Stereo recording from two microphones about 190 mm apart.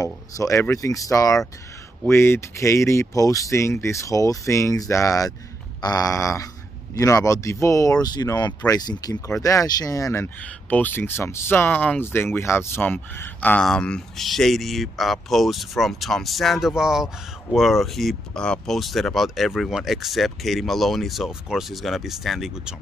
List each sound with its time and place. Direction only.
0.0 s speech: 15° left (ahead or behind); by 22.8 s centre (ahead or behind)